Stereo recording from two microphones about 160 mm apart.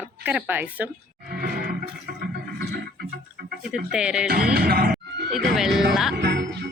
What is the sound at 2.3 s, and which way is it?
Music, 75° right (ahead or behind).